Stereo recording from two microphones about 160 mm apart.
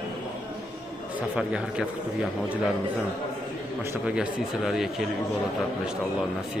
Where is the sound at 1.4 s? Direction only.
5° right (ahead or behind).